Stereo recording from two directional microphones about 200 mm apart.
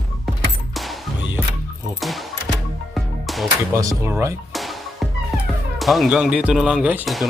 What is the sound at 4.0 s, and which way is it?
Speech, 10° right (ahead or behind).